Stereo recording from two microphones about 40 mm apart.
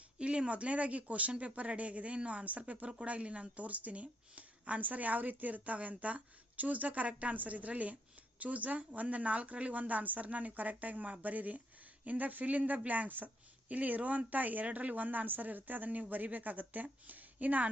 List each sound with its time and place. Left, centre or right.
0.2 s a woman's voice: right